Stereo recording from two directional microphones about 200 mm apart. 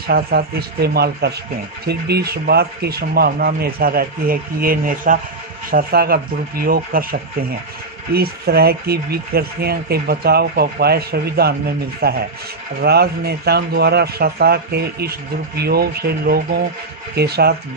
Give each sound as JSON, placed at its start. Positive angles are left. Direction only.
{"t": 0.1, "sound": "speech", "side_deg": -50}